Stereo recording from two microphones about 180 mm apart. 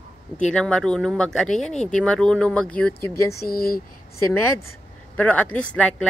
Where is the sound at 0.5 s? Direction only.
5° left (ahead or behind).